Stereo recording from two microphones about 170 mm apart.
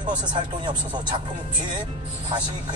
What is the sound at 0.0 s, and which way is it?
Speech, 25° right (ahead or behind).